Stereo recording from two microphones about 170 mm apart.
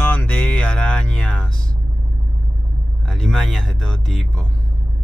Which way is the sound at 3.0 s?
Centre (ahead or behind).